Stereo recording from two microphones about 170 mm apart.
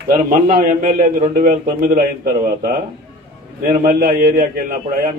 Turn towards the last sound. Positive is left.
turn(degrees=-60)  # may be behind; listen again after turning